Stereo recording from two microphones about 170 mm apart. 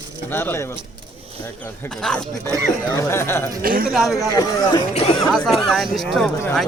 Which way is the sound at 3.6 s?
60° right (ahead or behind).